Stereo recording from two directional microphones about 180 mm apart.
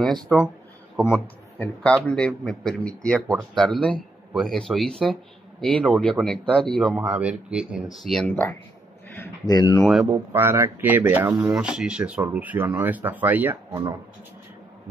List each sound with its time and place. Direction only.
0.9 s a man's voice: 10° left (ahead or behind)
8.3 s a man's voice: 10° left (ahead or behind)
10.3 s speech: 15° right (ahead or behind)